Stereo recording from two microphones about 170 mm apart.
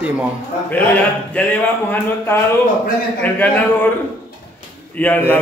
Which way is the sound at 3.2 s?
10° left (ahead or behind).